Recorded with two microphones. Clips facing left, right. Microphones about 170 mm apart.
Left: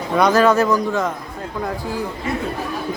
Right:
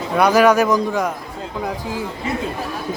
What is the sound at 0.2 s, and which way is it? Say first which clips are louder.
A man's voice: right 1 dB; 10° right (ahead or behind).